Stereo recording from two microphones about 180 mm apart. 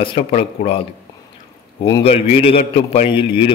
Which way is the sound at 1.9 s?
25° left (ahead or behind).